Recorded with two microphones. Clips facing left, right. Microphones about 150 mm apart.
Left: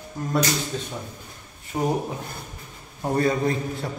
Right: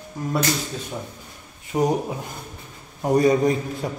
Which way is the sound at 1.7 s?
15° right (ahead or behind).